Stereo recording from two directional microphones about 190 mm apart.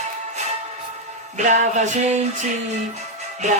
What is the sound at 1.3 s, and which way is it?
Music, 40° right (ahead or behind).